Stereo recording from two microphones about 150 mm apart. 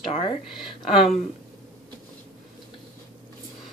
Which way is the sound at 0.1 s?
45° left (ahead or behind).